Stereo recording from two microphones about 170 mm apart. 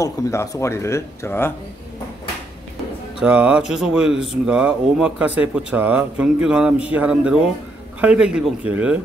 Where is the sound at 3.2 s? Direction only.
5° right (ahead or behind).